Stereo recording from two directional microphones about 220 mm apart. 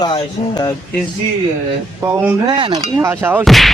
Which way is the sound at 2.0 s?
10° right (ahead or behind).